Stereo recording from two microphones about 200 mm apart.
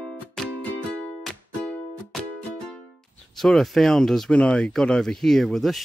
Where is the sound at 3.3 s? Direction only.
Centre (ahead or behind).